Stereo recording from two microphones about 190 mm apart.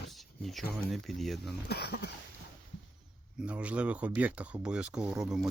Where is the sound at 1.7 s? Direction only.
60° left (ahead or behind).